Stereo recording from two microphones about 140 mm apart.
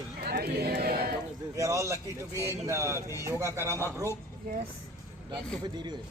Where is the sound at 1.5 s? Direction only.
20° right (ahead or behind).